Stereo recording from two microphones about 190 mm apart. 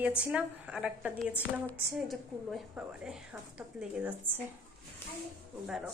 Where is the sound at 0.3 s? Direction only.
5° right (ahead or behind).